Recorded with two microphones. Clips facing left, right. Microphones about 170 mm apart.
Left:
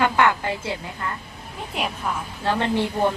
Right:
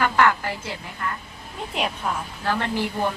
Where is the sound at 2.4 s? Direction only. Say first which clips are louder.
Left 3 dB; 25° left (ahead or behind).